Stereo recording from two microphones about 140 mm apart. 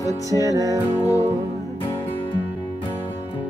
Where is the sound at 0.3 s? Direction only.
25° right (ahead or behind).